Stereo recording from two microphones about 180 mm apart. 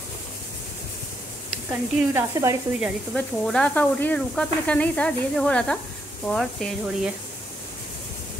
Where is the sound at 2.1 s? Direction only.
15° right (ahead or behind).